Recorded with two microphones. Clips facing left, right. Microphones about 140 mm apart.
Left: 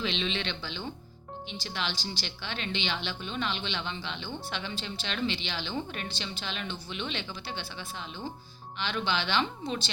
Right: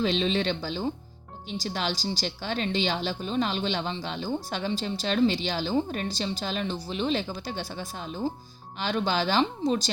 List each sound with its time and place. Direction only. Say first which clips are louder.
0.0 s speech: right 7 dB; 40° right (ahead or behind)